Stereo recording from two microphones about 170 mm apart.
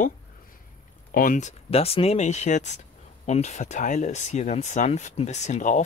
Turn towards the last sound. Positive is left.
turn(degrees=45)  # may be behind; listen again after turning